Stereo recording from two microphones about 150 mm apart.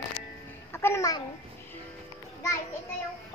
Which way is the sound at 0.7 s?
15° left (ahead or behind).